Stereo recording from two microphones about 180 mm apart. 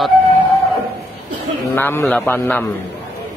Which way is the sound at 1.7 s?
15° left (ahead or behind).